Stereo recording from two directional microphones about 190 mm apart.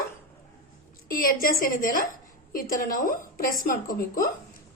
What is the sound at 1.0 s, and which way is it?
A woman's voice, 50° left (ahead or behind).